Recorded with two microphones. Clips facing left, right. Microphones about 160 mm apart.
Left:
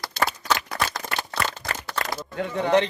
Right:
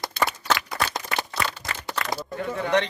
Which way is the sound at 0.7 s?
25° right (ahead or behind).